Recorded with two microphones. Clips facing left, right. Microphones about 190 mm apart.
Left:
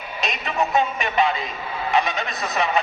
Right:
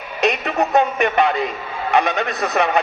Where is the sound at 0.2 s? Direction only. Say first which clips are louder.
Right 6 dB; 65° right (ahead or behind).